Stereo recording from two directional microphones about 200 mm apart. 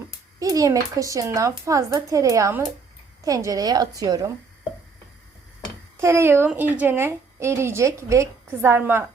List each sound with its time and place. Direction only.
0.3 s a woman's voice: 15° right (ahead or behind)
6.0 s a woman's voice: 15° right (ahead or behind)